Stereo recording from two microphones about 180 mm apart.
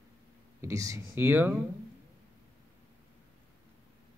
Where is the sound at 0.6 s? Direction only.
15° right (ahead or behind).